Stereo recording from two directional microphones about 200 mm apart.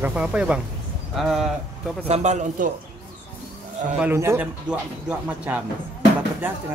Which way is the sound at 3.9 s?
10° right (ahead or behind).